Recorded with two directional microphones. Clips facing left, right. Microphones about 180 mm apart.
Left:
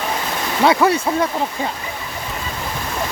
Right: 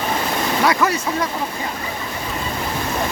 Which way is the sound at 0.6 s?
25° left (ahead or behind).